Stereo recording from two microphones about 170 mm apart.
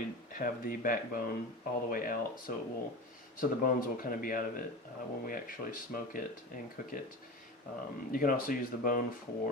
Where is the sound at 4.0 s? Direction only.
55° left (ahead or behind).